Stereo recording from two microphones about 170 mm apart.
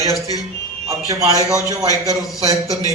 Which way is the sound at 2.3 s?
20° left (ahead or behind).